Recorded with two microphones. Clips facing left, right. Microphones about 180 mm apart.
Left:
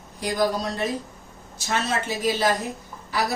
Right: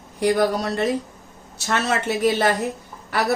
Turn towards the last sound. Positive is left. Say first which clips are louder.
# right 4 dB
turn(degrees=-70)  # may be behind; listen again after turning